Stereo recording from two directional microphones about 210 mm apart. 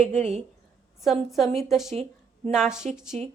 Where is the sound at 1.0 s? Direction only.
Centre (ahead or behind).